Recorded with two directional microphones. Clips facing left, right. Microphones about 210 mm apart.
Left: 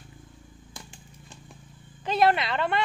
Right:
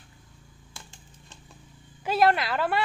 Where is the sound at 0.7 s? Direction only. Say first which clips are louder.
Left 3 dB; 15° left (ahead or behind).